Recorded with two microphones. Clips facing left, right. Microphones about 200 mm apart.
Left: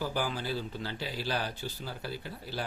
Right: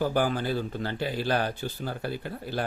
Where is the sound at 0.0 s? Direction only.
55° right (ahead or behind).